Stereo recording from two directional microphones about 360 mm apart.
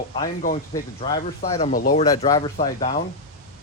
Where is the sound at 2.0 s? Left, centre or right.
Centre.